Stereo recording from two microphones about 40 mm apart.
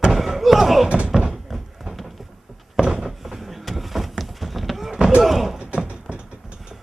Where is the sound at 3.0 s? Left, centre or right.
Centre.